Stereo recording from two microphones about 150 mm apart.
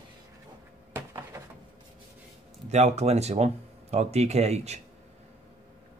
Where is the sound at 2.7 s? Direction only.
45° right (ahead or behind).